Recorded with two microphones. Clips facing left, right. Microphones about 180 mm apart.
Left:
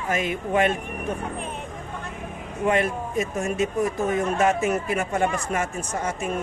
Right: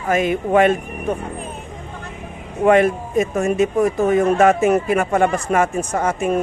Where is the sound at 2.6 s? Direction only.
60° right (ahead or behind).